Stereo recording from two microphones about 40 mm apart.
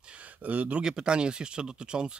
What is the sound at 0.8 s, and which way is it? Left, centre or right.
Speech, right.